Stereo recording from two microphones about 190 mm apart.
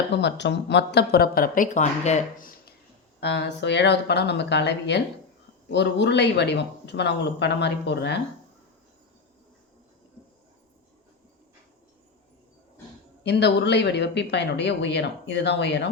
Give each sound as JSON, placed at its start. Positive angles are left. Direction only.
{"t": 0.1, "sound": "speech", "side_deg": 65}
{"t": 3.2, "sound": "speech", "side_deg": 65}
{"t": 13.2, "sound": "speech", "side_deg": 65}